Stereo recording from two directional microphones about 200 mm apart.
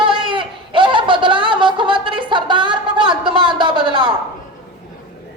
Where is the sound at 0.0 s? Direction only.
25° right (ahead or behind).